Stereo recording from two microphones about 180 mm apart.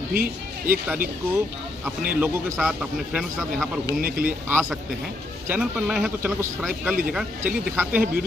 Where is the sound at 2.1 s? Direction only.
10° right (ahead or behind).